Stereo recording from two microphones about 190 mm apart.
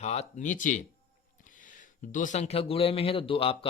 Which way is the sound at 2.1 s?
40° left (ahead or behind).